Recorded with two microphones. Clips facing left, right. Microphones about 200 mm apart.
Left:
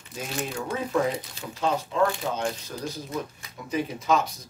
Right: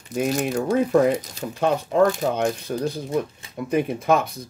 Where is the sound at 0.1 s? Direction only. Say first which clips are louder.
Right 10 dB; 65° right (ahead or behind).